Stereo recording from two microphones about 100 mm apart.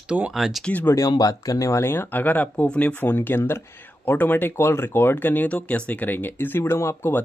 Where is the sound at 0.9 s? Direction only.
35° left (ahead or behind).